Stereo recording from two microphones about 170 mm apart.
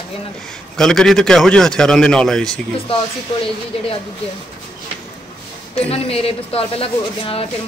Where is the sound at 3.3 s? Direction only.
30° left (ahead or behind).